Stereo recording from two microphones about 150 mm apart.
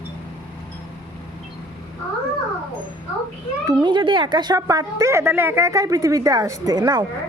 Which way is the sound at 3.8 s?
30° right (ahead or behind).